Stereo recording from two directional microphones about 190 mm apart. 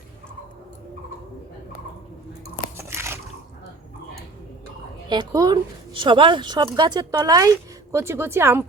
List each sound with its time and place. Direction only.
2.7 s biting: 15° right (ahead or behind)
5.0 s speech: 20° right (ahead or behind)